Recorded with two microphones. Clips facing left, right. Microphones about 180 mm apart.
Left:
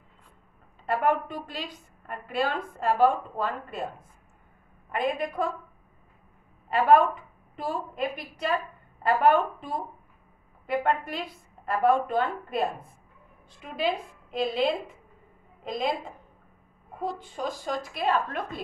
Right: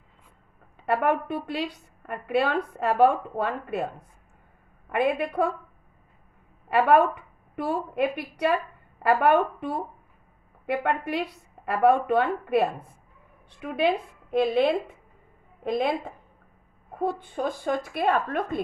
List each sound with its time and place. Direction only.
0.8 s a woman's voice: 60° right (ahead or behind)
4.9 s a woman's voice: 65° right (ahead or behind)
6.7 s a woman's voice: 70° right (ahead or behind); by 18.6 s 55° right (ahead or behind)